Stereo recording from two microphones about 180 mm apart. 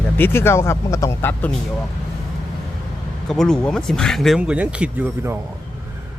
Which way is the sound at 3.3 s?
5° left (ahead or behind).